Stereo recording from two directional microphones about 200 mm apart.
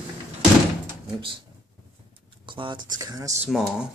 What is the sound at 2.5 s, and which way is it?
Speech, 25° right (ahead or behind).